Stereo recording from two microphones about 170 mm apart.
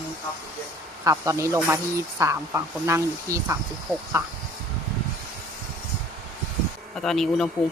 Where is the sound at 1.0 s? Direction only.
20° right (ahead or behind).